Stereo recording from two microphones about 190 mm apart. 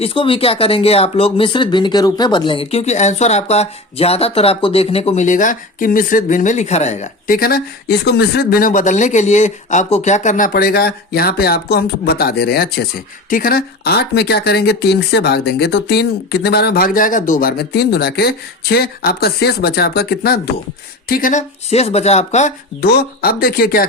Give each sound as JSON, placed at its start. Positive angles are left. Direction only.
{"t": 0.0, "sound": "speech", "side_deg": 30}
{"t": 21.1, "sound": "speech", "side_deg": 45}
{"t": 22.8, "sound": "speech", "side_deg": 55}